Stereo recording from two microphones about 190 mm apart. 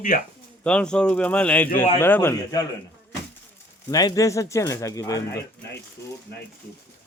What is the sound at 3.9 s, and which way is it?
Speech, 20° left (ahead or behind).